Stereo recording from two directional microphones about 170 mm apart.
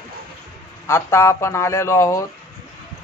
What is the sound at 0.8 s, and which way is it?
Speech, 15° left (ahead or behind).